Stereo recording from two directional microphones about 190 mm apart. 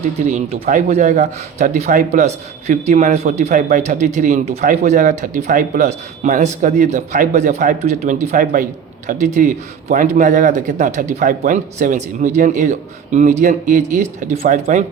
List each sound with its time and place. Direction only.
0.3 s a man's voice: 35° right (ahead or behind)